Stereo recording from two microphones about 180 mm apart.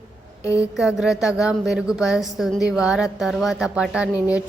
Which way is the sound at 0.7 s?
5° right (ahead or behind).